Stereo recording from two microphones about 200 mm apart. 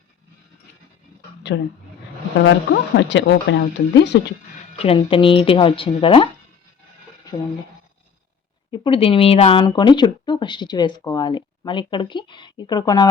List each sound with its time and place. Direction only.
1.5 s speech: 60° left (ahead or behind)
4.8 s speech: 25° left (ahead or behind)
8.7 s speech: 25° left (ahead or behind)